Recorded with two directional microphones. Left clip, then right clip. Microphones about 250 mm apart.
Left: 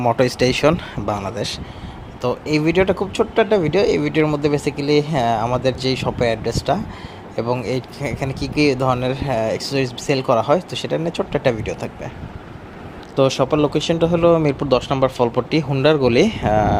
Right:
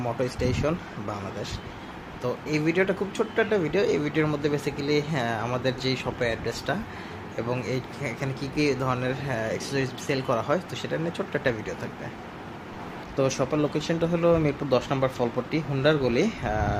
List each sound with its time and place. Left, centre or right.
0.0 s speech: left
13.1 s speech: left